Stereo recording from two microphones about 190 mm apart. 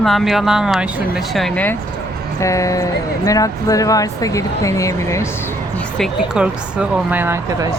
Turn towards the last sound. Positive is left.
turn(degrees=-10)  # may be behind; listen again after turning